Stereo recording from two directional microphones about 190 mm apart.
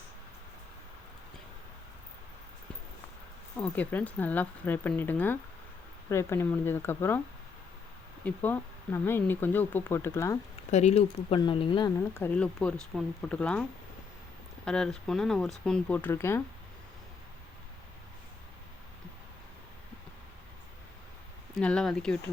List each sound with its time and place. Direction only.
3.6 s speech: 5° left (ahead or behind)
8.2 s speech: 10° left (ahead or behind)
10.7 s speech: 35° left (ahead or behind)
11.9 s speech: 10° left (ahead or behind)
21.5 s speech: 5° left (ahead or behind)